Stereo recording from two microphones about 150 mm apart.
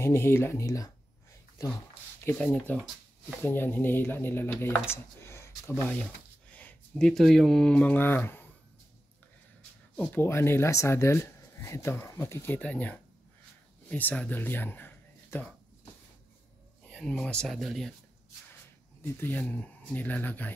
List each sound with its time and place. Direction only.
0.0 s speech: 15° left (ahead or behind)
2.2 s speech: 10° left (ahead or behind)
9.9 s speech: 15° left (ahead or behind)
16.8 s speech: 5° left (ahead or behind)
19.1 s speech: 10° left (ahead or behind)